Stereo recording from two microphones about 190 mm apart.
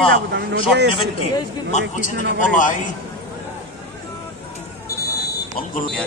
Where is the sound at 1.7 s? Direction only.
40° left (ahead or behind).